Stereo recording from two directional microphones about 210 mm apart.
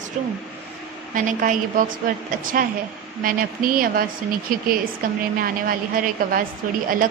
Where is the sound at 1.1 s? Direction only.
40° right (ahead or behind).